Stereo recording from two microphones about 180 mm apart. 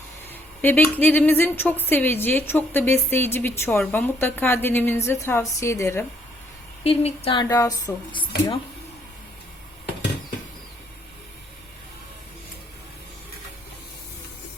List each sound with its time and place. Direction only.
0.6 s a woman's voice: 10° left (ahead or behind)
6.8 s a woman's voice: 35° left (ahead or behind)
7.4 s a woman's voice: 20° left (ahead or behind)